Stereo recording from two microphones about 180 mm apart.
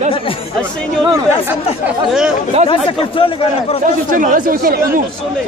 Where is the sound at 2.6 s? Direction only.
30° left (ahead or behind).